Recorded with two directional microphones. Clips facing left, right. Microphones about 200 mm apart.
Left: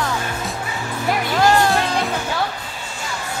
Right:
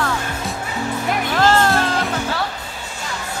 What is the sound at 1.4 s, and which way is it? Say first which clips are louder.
Music: even; 15° left (ahead or behind).